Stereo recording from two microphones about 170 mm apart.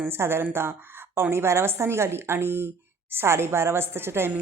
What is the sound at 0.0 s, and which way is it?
A woman's voice, 15° right (ahead or behind).